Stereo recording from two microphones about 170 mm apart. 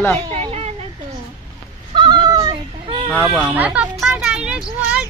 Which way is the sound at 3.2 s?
10° right (ahead or behind).